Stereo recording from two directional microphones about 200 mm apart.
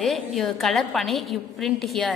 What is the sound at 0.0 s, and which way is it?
A woman's voice, centre (ahead or behind).